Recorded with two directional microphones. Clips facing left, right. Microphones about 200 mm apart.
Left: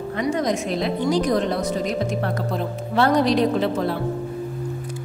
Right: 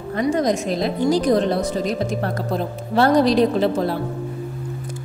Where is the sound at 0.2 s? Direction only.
40° right (ahead or behind).